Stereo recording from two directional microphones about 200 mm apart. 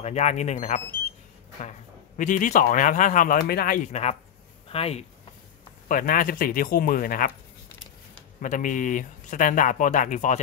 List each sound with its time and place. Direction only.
0.0 s speech: 35° left (ahead or behind)
2.1 s speech: 40° left (ahead or behind)
5.9 s speech: 45° left (ahead or behind)
8.4 s speech: 40° left (ahead or behind)